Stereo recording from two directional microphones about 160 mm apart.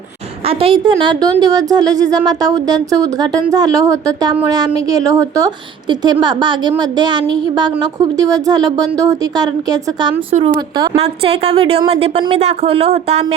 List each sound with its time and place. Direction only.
0.4 s a woman's voice: 35° right (ahead or behind)
10.9 s a woman's voice: 40° right (ahead or behind)